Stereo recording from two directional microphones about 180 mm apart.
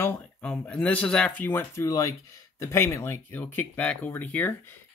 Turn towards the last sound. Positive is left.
turn(degrees=10)  # may be behind; listen again after turning